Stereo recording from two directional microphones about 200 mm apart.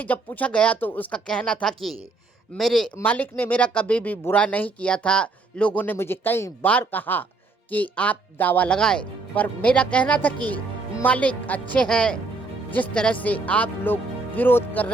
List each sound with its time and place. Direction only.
0.0 s speech: 10° left (ahead or behind)